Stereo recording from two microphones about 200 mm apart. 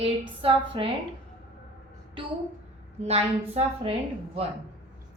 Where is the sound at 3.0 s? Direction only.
30° right (ahead or behind).